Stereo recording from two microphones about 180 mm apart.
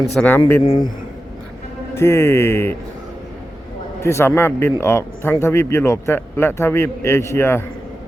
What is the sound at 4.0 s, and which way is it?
A man's voice, 15° left (ahead or behind).